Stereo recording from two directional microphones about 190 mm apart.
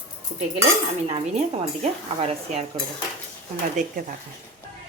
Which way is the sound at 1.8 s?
35° right (ahead or behind).